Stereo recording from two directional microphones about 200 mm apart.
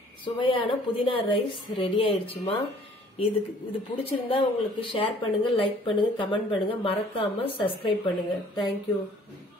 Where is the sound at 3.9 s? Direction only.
25° left (ahead or behind).